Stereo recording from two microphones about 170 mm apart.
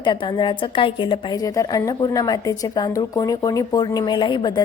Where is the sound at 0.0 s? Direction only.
25° left (ahead or behind).